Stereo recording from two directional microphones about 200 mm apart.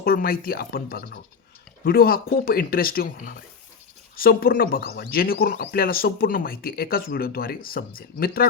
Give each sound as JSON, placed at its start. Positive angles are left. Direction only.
{"t": 0.0, "sound": "speech", "side_deg": 50}